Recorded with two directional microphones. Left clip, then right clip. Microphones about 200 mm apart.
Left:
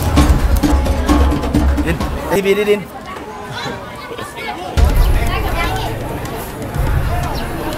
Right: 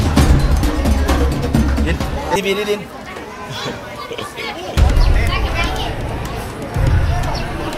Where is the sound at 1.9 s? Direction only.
40° left (ahead or behind).